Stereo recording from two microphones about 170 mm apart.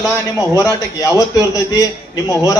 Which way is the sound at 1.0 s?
20° left (ahead or behind).